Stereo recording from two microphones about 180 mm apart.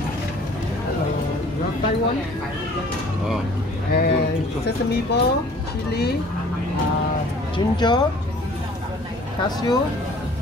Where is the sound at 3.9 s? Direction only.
60° left (ahead or behind).